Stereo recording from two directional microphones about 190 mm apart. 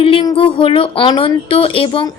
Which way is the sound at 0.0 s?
25° left (ahead or behind).